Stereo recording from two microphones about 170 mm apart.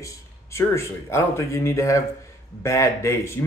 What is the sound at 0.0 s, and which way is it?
Speech, 15° left (ahead or behind).